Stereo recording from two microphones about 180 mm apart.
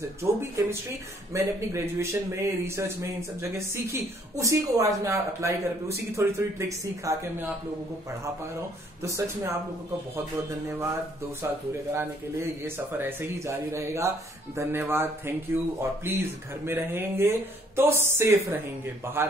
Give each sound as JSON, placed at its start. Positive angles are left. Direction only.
{"t": 0.2, "sound": "speech", "side_deg": -15}
{"t": 9.0, "sound": "speech", "side_deg": -15}
{"t": 11.4, "sound": "speech", "side_deg": -15}